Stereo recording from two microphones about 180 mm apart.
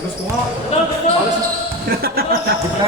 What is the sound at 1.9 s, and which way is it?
Speech, 60° right (ahead or behind).